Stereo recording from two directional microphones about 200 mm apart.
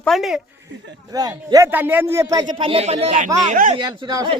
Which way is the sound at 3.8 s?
20° right (ahead or behind).